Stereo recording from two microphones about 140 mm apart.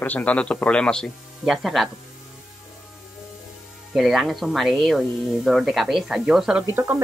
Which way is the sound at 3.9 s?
5° right (ahead or behind).